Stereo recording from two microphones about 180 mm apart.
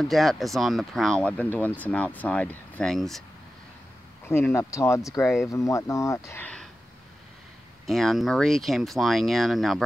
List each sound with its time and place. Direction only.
0.0 s speech: centre (ahead or behind)
4.3 s speech: 15° left (ahead or behind)
7.8 s speech: centre (ahead or behind)